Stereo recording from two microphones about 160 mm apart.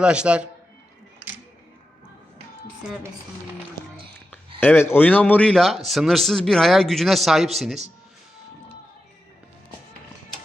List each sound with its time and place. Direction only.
0.0 s a man's voice: 5° right (ahead or behind)
4.6 s a man's voice: 15° left (ahead or behind)